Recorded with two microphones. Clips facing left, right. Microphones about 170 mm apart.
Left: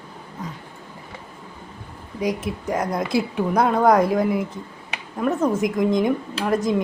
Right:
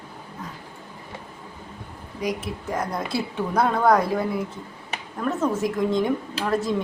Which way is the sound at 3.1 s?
15° left (ahead or behind).